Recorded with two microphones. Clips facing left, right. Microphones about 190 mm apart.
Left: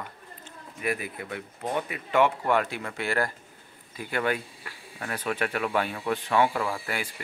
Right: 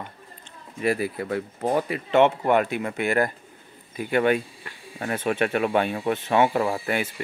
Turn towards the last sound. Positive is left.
turn(degrees=-25)  # may be behind; listen again after turning